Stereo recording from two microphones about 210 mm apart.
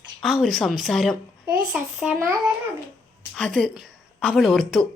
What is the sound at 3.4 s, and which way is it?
A woman's voice, 5° left (ahead or behind).